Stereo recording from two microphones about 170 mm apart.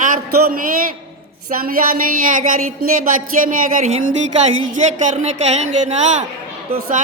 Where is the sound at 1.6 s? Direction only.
55° right (ahead or behind).